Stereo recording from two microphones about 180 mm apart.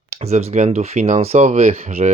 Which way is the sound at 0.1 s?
40° right (ahead or behind).